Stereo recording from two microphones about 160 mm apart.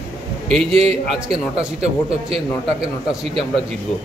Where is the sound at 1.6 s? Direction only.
5° right (ahead or behind).